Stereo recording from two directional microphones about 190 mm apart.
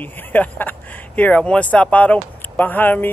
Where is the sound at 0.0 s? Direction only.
10° left (ahead or behind).